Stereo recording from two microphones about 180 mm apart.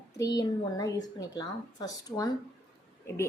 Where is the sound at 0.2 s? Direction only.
20° left (ahead or behind).